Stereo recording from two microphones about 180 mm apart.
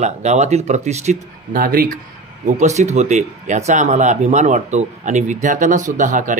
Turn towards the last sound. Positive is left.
turn(degrees=-45)  # may be behind; listen again after turning